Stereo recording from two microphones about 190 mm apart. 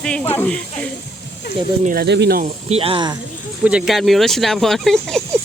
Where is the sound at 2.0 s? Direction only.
65° right (ahead or behind).